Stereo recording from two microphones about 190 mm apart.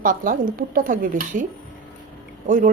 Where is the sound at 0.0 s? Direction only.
45° right (ahead or behind).